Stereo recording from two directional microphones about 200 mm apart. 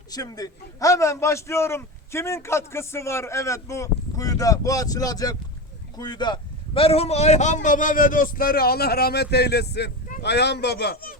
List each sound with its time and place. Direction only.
0.1 s a man's voice: 20° left (ahead or behind); by 11.2 s 50° left (ahead or behind)